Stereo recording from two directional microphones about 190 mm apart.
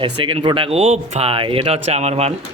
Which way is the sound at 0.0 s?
25° right (ahead or behind).